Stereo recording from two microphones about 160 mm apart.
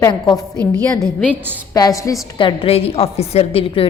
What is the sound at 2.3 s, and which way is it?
A woman's voice, 35° left (ahead or behind).